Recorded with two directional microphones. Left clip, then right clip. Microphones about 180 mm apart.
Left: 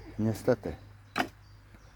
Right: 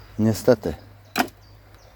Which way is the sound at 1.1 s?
60° right (ahead or behind).